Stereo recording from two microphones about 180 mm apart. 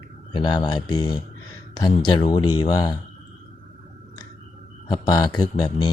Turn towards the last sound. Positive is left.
turn(degrees=25)  # may be behind; listen again after turning